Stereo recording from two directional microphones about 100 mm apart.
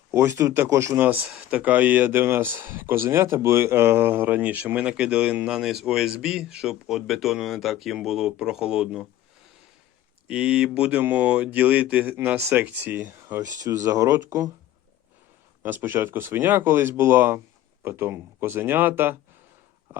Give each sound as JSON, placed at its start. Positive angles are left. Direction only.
{"t": 0.1, "sound": "speech", "side_deg": -30}
{"t": 1.0, "sound": "speech", "side_deg": -15}
{"t": 10.2, "sound": "speech", "side_deg": -10}
{"t": 13.6, "sound": "speech", "side_deg": -35}
{"t": 15.6, "sound": "speech", "side_deg": -20}